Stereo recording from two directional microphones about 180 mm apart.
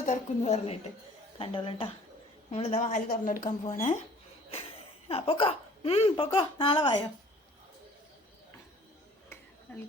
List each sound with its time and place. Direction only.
0.0 s a woman's voice: 40° left (ahead or behind)
5.0 s speech: 30° left (ahead or behind)